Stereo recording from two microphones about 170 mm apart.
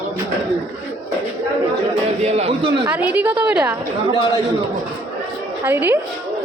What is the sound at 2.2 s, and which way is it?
Speech, 40° right (ahead or behind).